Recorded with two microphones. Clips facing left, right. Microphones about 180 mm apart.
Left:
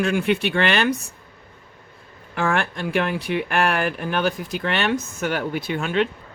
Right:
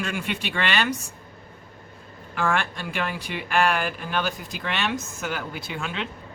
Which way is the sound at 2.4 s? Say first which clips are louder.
Left 3 dB; 55° left (ahead or behind).